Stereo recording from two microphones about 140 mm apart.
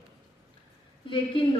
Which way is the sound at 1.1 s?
35° left (ahead or behind).